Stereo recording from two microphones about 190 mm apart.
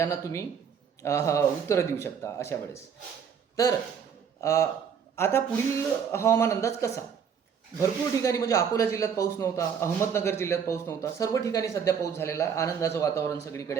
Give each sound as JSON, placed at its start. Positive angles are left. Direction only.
{"t": 0.0, "sound": "a man's voice", "side_deg": 15}